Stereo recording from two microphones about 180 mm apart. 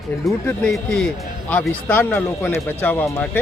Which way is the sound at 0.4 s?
5° left (ahead or behind).